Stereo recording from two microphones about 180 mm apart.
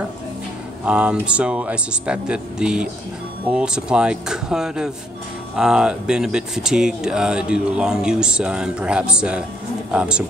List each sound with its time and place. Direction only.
0.8 s speech: 5° right (ahead or behind)